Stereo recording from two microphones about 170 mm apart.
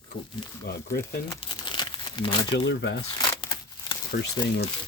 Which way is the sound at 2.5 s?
90° left.